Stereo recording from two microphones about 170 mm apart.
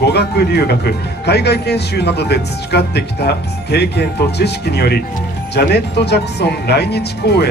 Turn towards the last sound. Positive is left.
turn(degrees=70)  # may be behind; listen again after turning